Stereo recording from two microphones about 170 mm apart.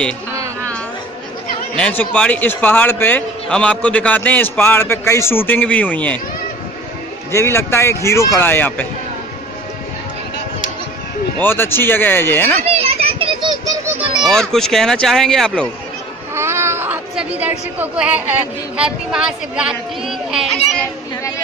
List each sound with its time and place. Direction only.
1.8 s a man's voice: 5° left (ahead or behind)
7.3 s a man's voice: 15° left (ahead or behind)
11.4 s a man's voice: 15° left (ahead or behind)
12.6 s children playing: 35° right (ahead or behind)
14.2 s speech: 5° left (ahead or behind)
16.3 s a sound: 15° right (ahead or behind)
18.8 s speech: 5° right (ahead or behind)